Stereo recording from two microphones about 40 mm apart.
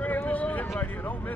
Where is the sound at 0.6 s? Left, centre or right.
Left.